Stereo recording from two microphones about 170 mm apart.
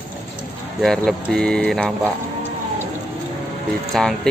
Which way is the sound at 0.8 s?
Centre (ahead or behind).